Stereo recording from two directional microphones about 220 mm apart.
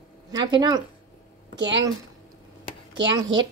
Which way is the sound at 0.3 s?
20° right (ahead or behind).